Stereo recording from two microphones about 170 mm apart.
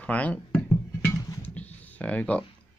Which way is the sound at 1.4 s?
10° left (ahead or behind).